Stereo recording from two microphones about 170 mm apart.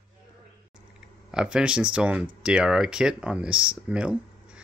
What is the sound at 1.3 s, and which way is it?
Speech, 5° right (ahead or behind).